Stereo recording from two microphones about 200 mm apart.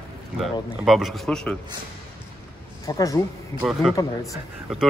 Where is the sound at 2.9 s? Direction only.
15° left (ahead or behind).